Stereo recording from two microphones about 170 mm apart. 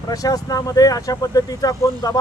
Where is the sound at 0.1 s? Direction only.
20° left (ahead or behind).